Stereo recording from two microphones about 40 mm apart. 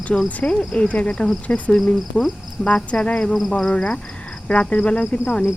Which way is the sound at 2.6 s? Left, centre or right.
Centre.